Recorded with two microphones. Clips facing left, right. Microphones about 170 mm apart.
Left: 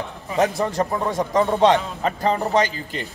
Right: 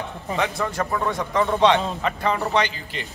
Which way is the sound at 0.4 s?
35° left (ahead or behind).